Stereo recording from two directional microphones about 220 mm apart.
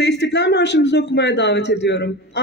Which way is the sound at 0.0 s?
50° left (ahead or behind).